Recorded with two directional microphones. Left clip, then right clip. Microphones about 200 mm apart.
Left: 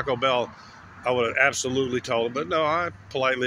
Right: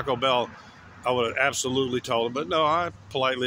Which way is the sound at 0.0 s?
5° right (ahead or behind).